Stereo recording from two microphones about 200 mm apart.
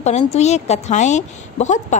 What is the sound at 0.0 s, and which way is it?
A woman's voice, 35° left (ahead or behind).